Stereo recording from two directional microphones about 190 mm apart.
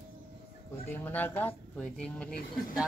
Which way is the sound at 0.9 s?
10° left (ahead or behind).